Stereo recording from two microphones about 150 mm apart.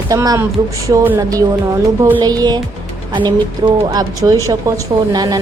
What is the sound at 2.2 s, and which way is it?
A woman's voice, 25° right (ahead or behind).